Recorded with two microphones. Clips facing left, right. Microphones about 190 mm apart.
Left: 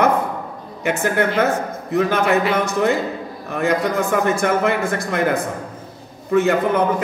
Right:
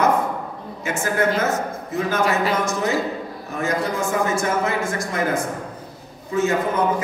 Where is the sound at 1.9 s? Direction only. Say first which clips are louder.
Left 4 dB; 60° left (ahead or behind).